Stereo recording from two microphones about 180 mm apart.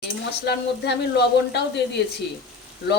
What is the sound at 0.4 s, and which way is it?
Speech, 70° left (ahead or behind).